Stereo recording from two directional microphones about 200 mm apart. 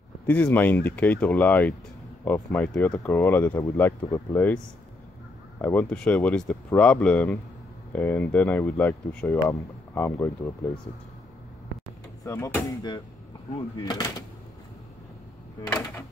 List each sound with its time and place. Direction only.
0.3 s speech: 10° left (ahead or behind)
5.6 s speech: 10° left (ahead or behind)
12.3 s speech: 10° left (ahead or behind)